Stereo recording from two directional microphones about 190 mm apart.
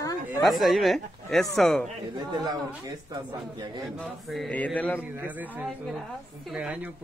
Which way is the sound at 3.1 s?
20° right (ahead or behind).